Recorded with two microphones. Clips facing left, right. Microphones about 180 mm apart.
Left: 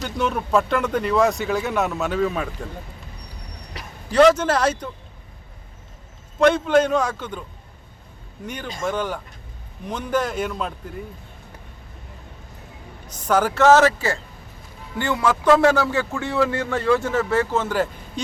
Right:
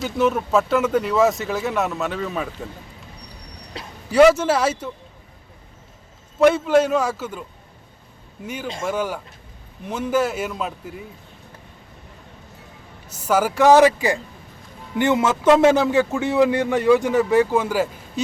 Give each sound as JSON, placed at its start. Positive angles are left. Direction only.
{"t": 0.0, "sound": "speech", "side_deg": 0}
{"t": 4.1, "sound": "speech", "side_deg": -10}
{"t": 6.4, "sound": "speech", "side_deg": -5}
{"t": 8.4, "sound": "speech", "side_deg": -5}
{"t": 13.1, "sound": "speech", "side_deg": -10}